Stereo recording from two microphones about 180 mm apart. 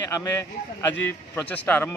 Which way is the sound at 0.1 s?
20° left (ahead or behind).